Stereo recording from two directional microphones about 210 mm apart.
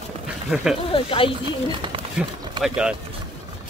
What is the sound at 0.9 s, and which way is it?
Speech, 25° left (ahead or behind).